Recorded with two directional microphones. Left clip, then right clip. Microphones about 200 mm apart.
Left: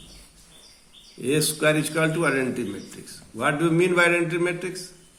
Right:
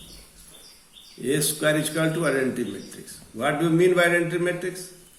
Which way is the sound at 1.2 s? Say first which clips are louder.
Left 2 dB; 40° left (ahead or behind).